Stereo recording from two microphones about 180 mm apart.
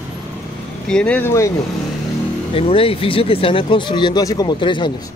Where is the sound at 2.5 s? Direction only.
30° left (ahead or behind).